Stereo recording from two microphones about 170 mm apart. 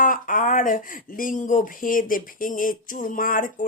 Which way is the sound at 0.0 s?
50° left (ahead or behind).